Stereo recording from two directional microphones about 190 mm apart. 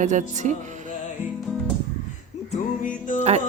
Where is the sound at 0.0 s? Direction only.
40° right (ahead or behind).